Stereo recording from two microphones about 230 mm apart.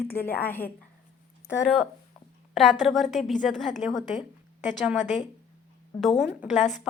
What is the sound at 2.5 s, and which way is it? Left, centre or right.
A woman's voice, centre.